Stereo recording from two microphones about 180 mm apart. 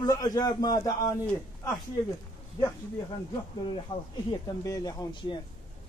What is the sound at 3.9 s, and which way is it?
Speech, 25° left (ahead or behind).